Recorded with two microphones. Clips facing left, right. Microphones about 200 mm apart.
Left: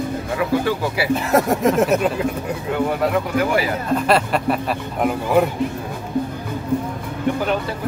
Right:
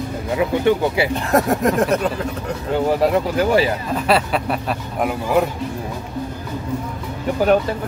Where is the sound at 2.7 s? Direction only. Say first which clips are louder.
Right 3 dB; 30° right (ahead or behind).